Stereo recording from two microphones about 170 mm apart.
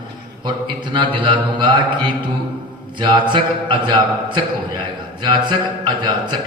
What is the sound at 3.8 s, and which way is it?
A man's voice, 25° right (ahead or behind).